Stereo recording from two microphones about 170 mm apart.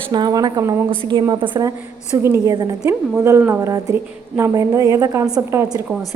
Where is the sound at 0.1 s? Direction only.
25° right (ahead or behind).